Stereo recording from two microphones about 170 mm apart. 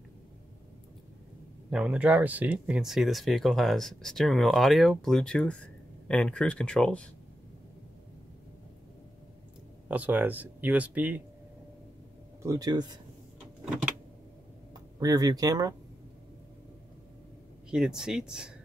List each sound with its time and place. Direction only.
1.7 s speech: 5° right (ahead or behind)
9.8 s speech: 10° right (ahead or behind)
12.4 s speech: 20° right (ahead or behind)
15.0 s speech: 20° right (ahead or behind)
17.6 s speech: 5° right (ahead or behind)